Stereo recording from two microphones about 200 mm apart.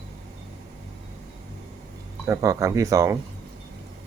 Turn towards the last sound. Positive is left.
turn(degrees=-15)  # may be behind; listen again after turning